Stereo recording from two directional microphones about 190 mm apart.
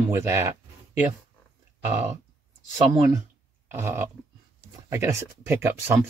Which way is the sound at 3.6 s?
10° right (ahead or behind).